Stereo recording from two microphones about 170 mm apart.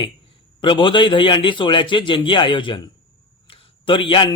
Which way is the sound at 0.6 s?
30° left (ahead or behind).